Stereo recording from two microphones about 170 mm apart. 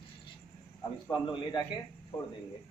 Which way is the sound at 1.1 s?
25° left (ahead or behind).